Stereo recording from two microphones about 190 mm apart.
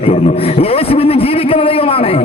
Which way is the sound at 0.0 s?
30° left (ahead or behind).